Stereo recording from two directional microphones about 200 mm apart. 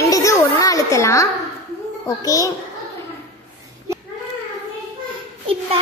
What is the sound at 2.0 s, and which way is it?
Speech, 15° left (ahead or behind).